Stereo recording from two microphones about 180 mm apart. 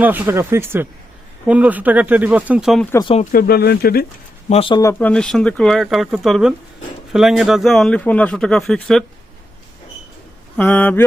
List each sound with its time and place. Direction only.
0.0 s speech: 10° right (ahead or behind)
2.9 s speech: 25° left (ahead or behind)
3.3 s speech: 60° left (ahead or behind)
4.4 s speech: 35° left (ahead or behind)
4.7 s a man's voice: 15° left (ahead or behind)
10.6 s speech: 10° left (ahead or behind)